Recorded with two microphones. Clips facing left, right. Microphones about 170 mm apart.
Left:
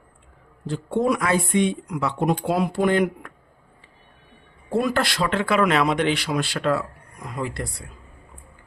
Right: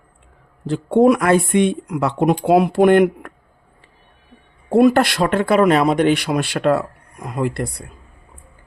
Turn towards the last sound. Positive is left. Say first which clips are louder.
# right 7 dB
turn(degrees=-55)  # may be behind; listen again after turning